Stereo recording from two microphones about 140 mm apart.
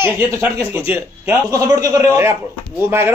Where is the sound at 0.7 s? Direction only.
15° right (ahead or behind).